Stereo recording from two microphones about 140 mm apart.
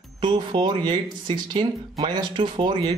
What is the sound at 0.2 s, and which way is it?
Speech, 30° right (ahead or behind).